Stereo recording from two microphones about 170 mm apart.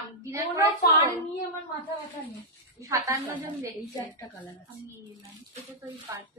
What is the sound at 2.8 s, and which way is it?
Speech, 20° right (ahead or behind).